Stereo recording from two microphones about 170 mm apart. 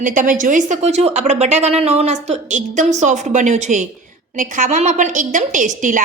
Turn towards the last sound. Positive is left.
turn(degrees=-50)  # may be behind; listen again after turning